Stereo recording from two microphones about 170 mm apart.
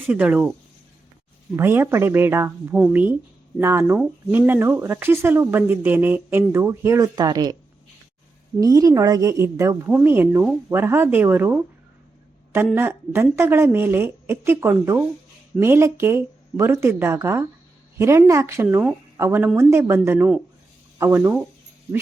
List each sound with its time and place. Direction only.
0.1 s speech: 5° right (ahead or behind)
1.5 s speech: 15° right (ahead or behind)
8.6 s a woman's voice: 20° right (ahead or behind)
12.7 s speech: 15° right (ahead or behind)